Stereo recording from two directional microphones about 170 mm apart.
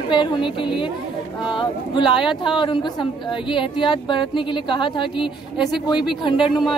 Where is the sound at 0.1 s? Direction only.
30° left (ahead or behind).